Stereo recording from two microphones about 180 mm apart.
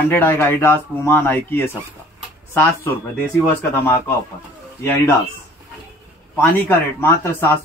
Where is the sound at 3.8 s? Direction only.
15° left (ahead or behind).